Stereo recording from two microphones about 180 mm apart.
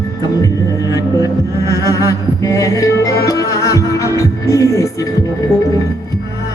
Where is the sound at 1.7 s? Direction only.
15° left (ahead or behind).